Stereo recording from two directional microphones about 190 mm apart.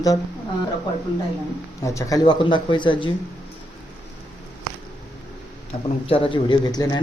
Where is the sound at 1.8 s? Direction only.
15° left (ahead or behind).